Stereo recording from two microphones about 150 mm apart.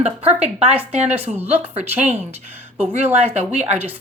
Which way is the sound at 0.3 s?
10° right (ahead or behind).